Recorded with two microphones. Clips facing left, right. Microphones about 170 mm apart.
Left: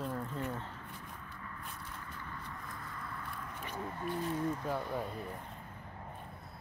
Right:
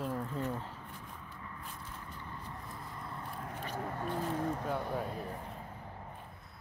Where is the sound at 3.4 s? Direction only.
40° right (ahead or behind).